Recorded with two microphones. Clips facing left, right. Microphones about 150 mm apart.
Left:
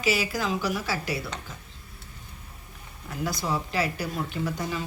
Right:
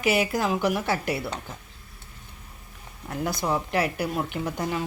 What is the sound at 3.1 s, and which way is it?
Speech, 55° right (ahead or behind).